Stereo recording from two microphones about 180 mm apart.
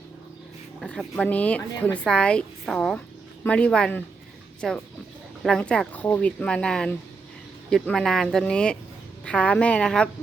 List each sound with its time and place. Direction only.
0.8 s a woman's voice: 5° left (ahead or behind)